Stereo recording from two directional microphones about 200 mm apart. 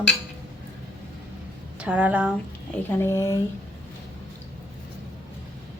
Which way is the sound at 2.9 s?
10° left (ahead or behind).